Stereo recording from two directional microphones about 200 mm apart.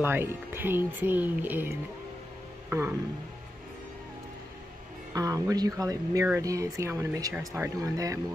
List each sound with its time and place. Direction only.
0.0 s speech: 10° right (ahead or behind)
5.1 s speech: 15° right (ahead or behind)